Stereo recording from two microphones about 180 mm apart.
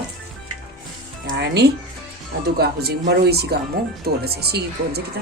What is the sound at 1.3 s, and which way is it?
A woman's voice, 70° right (ahead or behind).